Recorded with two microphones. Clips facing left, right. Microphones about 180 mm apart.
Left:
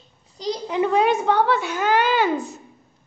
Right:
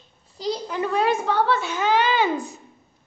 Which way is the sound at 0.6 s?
20° left (ahead or behind).